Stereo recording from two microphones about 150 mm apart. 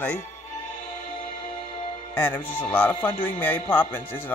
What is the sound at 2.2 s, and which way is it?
Speech, 10° left (ahead or behind).